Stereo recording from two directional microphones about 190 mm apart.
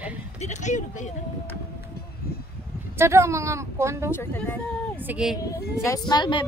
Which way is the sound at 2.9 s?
15° right (ahead or behind).